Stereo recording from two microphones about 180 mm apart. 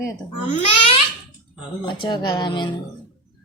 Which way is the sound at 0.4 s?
35° left (ahead or behind).